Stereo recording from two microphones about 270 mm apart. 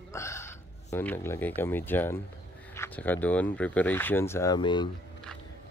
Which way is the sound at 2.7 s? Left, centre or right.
Centre.